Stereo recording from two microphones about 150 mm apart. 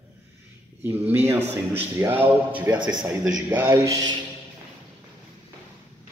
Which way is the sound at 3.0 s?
15° right (ahead or behind).